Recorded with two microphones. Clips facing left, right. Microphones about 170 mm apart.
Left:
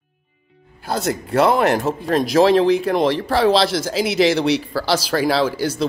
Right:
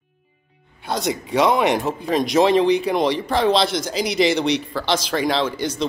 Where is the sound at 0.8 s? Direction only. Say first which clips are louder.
Left 1 dB; 5° left (ahead or behind).